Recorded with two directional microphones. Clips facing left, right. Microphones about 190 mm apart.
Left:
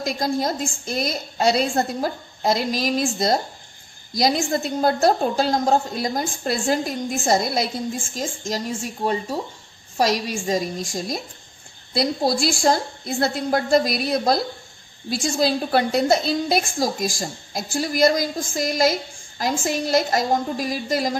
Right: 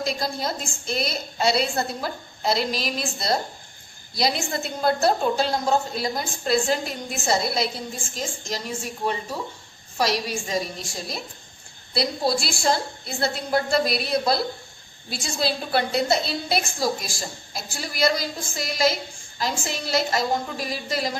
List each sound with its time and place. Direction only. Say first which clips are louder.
0.0 s a woman's voice: left 4 dB; 45° left (ahead or behind)